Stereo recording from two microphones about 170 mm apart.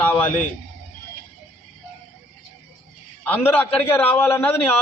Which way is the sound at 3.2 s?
10° left (ahead or behind).